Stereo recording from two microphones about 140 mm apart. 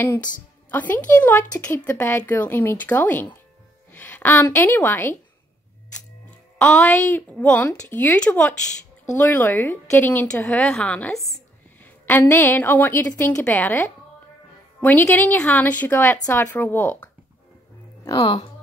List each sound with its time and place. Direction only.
0.7 s a woman's voice: 15° left (ahead or behind)
6.6 s a woman's voice: 10° left (ahead or behind)
18.2 s speech: 45° left (ahead or behind)